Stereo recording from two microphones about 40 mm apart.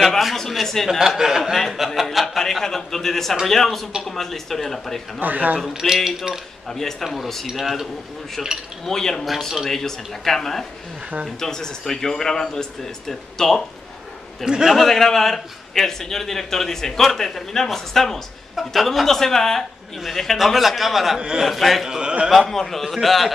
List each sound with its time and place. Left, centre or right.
0.4 s a man's voice: centre
0.8 s speech: centre
2.0 s a sound: centre
3.4 s a man's voice: centre
5.2 s speech: right
5.7 s speech: centre
6.7 s a man's voice: centre
8.4 s a man's voice: centre
14.4 s speech: centre
14.8 s a man's voice: centre
21.8 s speech: centre
22.5 s a man's voice: centre